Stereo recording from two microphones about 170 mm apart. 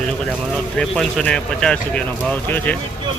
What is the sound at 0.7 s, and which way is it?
Speech, 5° left (ahead or behind).